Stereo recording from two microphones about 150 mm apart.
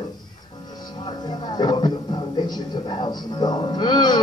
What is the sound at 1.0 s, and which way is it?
Speech, 30° left (ahead or behind).